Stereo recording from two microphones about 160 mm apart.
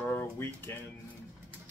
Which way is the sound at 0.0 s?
15° left (ahead or behind).